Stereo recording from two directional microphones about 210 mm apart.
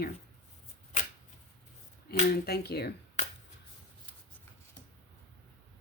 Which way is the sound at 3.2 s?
35° left (ahead or behind).